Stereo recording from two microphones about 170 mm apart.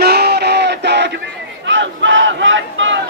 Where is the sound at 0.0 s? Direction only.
70° right (ahead or behind); by 1.1 s 90° right.